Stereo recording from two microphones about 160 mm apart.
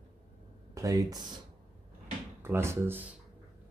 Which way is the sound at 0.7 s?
20° right (ahead or behind).